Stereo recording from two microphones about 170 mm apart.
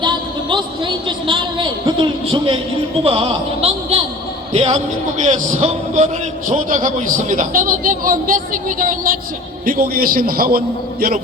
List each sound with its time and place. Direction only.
0.0 s a man's voice: 25° right (ahead or behind); by 10.6 s 60° right (ahead or behind)